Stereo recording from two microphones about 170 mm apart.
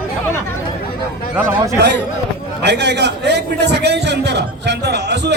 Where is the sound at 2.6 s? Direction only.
85° right.